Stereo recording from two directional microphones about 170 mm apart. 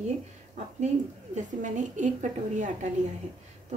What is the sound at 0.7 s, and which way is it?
A woman's voice, 45° right (ahead or behind).